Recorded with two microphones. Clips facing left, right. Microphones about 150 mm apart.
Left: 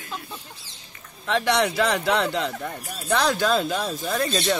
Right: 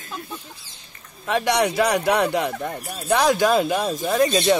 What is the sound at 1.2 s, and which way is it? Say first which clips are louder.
Speech: right 2 dB; 15° right (ahead or behind).